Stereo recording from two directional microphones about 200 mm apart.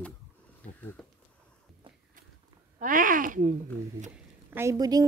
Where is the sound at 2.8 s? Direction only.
45° right (ahead or behind).